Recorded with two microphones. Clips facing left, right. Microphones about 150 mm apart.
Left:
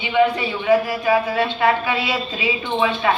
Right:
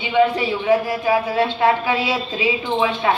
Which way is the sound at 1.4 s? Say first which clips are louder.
Right 1 dB; 15° right (ahead or behind).